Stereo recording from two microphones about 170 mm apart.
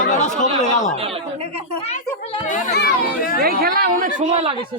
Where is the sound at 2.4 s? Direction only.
50° left (ahead or behind).